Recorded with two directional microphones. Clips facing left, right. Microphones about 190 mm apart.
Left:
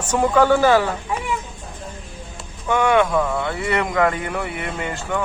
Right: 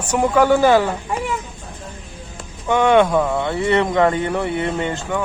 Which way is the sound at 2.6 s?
25° right (ahead or behind).